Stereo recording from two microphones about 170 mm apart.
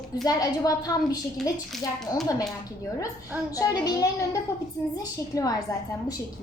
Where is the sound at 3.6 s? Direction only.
20° left (ahead or behind).